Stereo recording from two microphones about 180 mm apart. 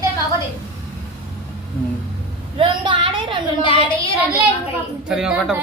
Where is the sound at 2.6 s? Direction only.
30° right (ahead or behind).